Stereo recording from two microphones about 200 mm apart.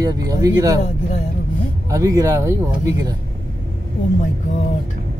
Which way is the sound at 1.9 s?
15° right (ahead or behind).